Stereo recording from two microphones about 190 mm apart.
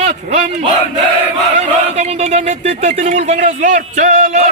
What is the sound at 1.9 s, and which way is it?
Speech, 35° right (ahead or behind).